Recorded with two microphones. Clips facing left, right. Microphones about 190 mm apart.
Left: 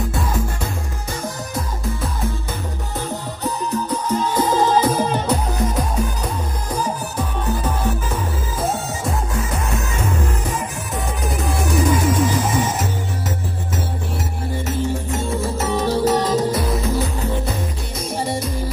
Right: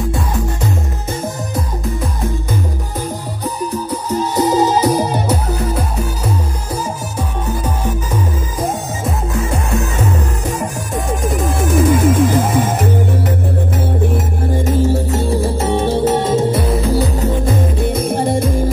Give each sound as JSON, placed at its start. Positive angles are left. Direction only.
{"t": 3.4, "sound": "music", "side_deg": -10}
{"t": 6.7, "sound": "music", "side_deg": -10}
{"t": 11.9, "sound": "music", "side_deg": -55}
{"t": 14.6, "sound": "music", "side_deg": -40}
{"t": 17.7, "sound": "music", "side_deg": -55}